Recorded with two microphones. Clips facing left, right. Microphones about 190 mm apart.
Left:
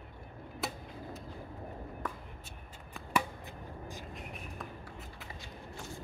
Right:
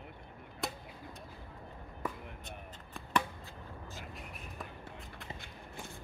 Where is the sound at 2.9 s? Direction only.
10° left (ahead or behind).